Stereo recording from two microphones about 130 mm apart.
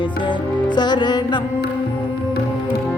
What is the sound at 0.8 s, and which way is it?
Music, 35° left (ahead or behind).